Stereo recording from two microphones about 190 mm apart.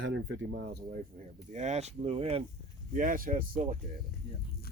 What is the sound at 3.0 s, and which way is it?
Speech, 45° right (ahead or behind).